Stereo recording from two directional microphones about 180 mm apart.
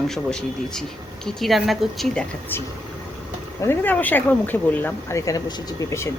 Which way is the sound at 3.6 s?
10° left (ahead or behind).